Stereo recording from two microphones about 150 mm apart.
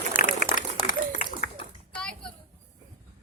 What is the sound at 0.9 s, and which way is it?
Run, 60° left (ahead or behind).